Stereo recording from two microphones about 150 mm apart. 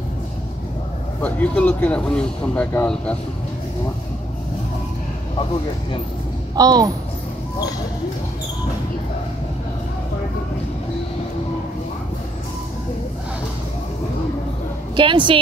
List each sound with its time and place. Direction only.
1.2 s speech: 10° left (ahead or behind)
6.5 s speech: 25° right (ahead or behind)
15.0 s a woman's voice: 35° right (ahead or behind)